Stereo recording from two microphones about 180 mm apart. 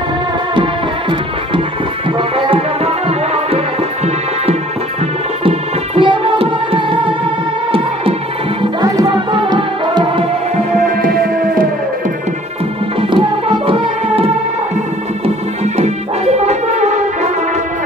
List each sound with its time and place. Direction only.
2.3 s music: 30° right (ahead or behind)
8.9 s music: 25° right (ahead or behind)
11.0 s music: 50° right (ahead or behind)
13.1 s music: 30° right (ahead or behind)